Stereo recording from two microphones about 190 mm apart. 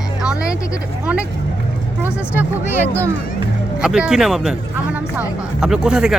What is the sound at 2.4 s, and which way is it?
Speech, 10° right (ahead or behind).